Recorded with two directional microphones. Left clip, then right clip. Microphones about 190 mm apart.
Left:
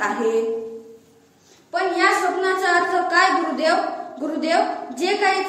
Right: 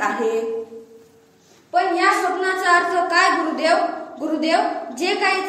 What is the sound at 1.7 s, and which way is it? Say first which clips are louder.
A woman's voice: right 1 dB; centre (ahead or behind).